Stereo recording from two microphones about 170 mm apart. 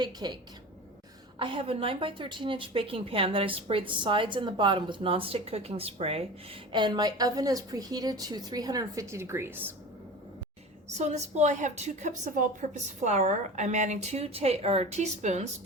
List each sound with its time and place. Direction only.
0.0 s a woman's voice: 25° right (ahead or behind)
1.4 s a woman's voice: 30° right (ahead or behind); by 9.7 s 10° right (ahead or behind)
10.9 s a woman's voice: 40° right (ahead or behind)